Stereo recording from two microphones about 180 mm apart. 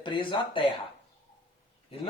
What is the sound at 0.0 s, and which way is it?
Speech, 25° left (ahead or behind).